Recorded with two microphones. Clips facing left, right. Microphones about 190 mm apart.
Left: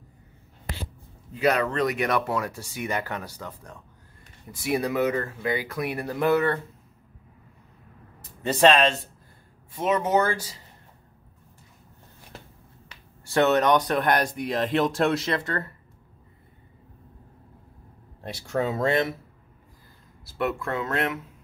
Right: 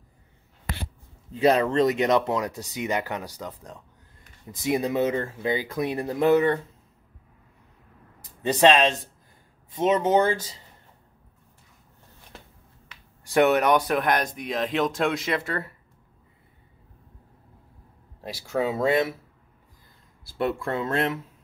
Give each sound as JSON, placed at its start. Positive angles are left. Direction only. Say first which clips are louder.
{"t": 1.3, "sound": "speech", "louder": "right 3 dB", "side_deg": -25}
{"t": 8.4, "sound": "speech", "louder": "even", "side_deg": -15}
{"t": 13.2, "sound": "speech", "louder": "right 1 dB", "side_deg": -15}
{"t": 18.2, "sound": "speech", "louder": "right 1 dB", "side_deg": -5}
{"t": 20.3, "sound": "speech", "louder": "right 1 dB", "side_deg": -30}